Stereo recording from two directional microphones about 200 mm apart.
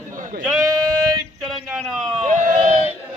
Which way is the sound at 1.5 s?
Centre (ahead or behind).